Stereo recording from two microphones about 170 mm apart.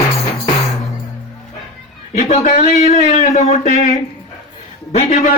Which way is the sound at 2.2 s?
40° left (ahead or behind).